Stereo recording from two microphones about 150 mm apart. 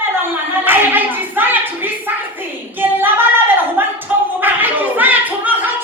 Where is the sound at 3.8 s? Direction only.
15° right (ahead or behind).